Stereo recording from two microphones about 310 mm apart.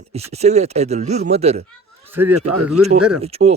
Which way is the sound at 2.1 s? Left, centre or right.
Centre.